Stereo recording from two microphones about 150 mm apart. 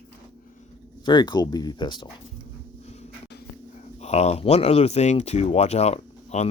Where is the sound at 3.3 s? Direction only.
90° left.